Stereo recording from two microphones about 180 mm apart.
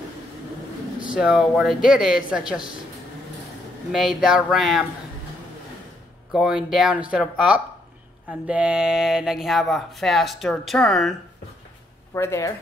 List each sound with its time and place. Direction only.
1.1 s speech: 5° right (ahead or behind)
3.9 s speech: centre (ahead or behind)
6.3 s speech: 5° right (ahead or behind)
12.1 s speech: 15° left (ahead or behind)